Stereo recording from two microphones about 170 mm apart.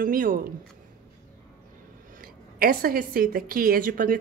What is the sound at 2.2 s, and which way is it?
A woman's voice, 60° right (ahead or behind).